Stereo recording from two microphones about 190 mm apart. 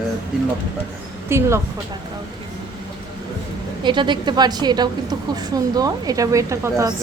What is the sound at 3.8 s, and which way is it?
A woman's voice, 25° right (ahead or behind).